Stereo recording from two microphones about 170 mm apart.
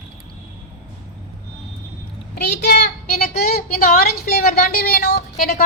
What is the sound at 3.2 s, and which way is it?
A woman's voice, 65° left (ahead or behind).